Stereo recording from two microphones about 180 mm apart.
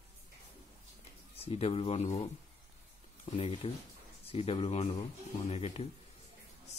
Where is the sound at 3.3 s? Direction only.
30° left (ahead or behind).